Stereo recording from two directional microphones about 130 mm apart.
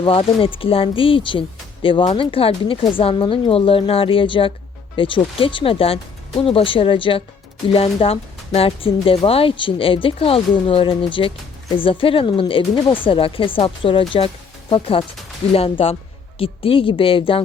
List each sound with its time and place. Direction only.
0.0 s speech: 45° left (ahead or behind)